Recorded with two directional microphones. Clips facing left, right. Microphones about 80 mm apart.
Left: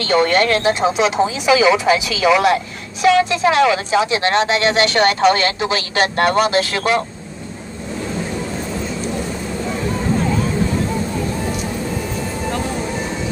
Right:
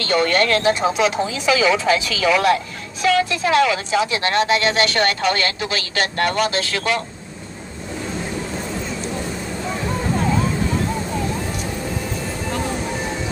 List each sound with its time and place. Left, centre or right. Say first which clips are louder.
0.0 s speech: left 3 dB; left